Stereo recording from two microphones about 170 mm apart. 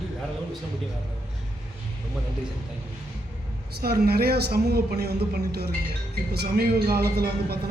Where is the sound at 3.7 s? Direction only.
70° right (ahead or behind).